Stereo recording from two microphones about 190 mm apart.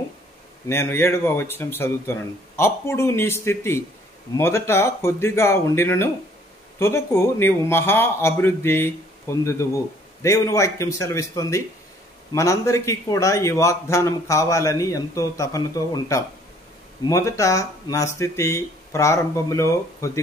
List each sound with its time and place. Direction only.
0.7 s a man's voice: 15° left (ahead or behind)